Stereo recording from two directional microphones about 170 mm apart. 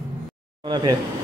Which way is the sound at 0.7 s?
25° right (ahead or behind).